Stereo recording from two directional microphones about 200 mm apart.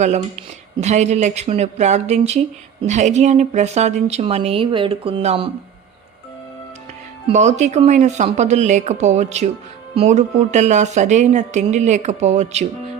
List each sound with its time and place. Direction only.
0.0 s speech: 35° right (ahead or behind)
7.3 s speech: 35° right (ahead or behind)